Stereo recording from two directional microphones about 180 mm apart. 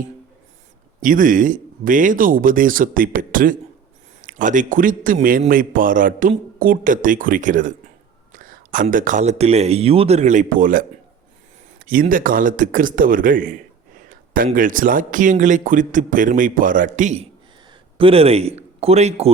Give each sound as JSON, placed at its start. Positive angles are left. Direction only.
{"t": 1.0, "sound": "speech", "side_deg": -50}
{"t": 11.9, "sound": "speech", "side_deg": -50}
{"t": 17.9, "sound": "speech", "side_deg": -30}